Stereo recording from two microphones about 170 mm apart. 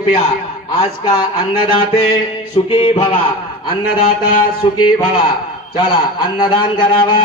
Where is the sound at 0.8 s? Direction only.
30° left (ahead or behind).